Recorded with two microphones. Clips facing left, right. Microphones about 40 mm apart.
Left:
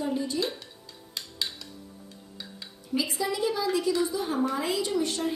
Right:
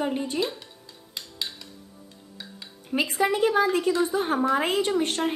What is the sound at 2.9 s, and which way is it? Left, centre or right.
A woman's voice, right.